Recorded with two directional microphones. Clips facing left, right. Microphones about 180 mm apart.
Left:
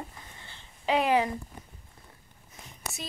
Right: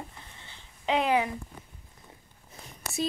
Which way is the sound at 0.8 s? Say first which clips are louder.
Left 1 dB; 10° left (ahead or behind).